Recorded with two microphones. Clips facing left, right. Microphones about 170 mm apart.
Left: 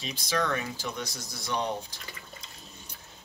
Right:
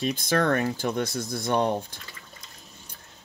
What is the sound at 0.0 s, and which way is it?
Speech, 55° right (ahead or behind).